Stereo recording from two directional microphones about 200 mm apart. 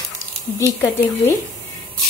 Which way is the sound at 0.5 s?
10° left (ahead or behind).